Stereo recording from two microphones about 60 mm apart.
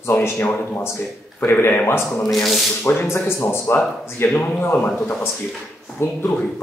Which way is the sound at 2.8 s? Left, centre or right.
Left.